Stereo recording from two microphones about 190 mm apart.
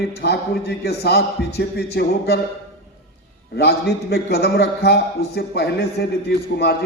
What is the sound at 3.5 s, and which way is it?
A man's voice, 60° left (ahead or behind).